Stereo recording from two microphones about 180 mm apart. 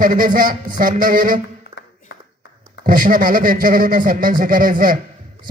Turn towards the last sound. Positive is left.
turn(degrees=-50)  # may be behind; listen again after turning